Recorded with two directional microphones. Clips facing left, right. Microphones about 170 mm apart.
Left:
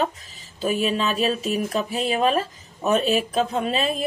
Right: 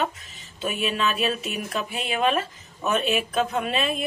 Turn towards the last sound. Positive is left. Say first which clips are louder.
# left 2 dB
turn(degrees=30)  # may be behind; listen again after turning